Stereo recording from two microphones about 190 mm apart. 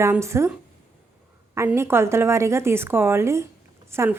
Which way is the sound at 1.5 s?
15° right (ahead or behind).